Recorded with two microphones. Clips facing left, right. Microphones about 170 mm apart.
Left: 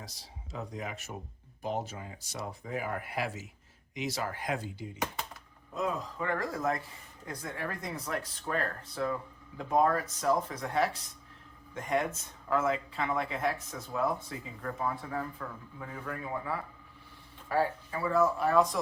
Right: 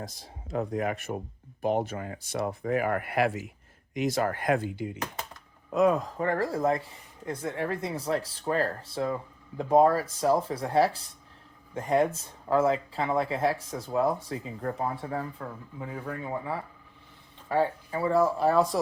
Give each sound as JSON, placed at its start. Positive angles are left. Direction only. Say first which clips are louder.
{"t": 0.0, "sound": "speech", "louder": "right 8 dB", "side_deg": -50}
{"t": 6.1, "sound": "speech", "louder": "right 6 dB", "side_deg": -40}